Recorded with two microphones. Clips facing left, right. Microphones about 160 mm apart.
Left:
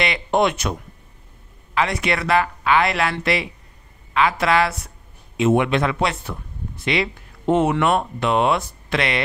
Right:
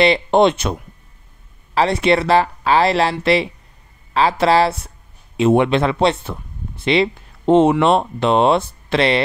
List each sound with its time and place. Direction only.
0.0 s speech: 30° right (ahead or behind)
1.8 s speech: 30° right (ahead or behind)